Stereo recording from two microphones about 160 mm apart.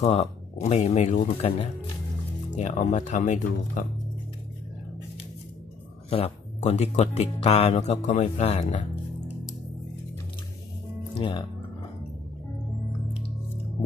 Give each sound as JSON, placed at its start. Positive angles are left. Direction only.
{"t": 0.0, "sound": "speech", "side_deg": 40}
{"t": 6.0, "sound": "speech", "side_deg": 40}
{"t": 11.1, "sound": "speech", "side_deg": 30}